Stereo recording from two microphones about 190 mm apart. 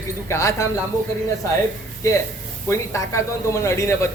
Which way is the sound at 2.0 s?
15° left (ahead or behind).